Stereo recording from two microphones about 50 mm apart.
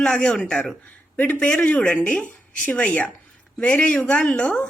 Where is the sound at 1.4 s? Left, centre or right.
Left.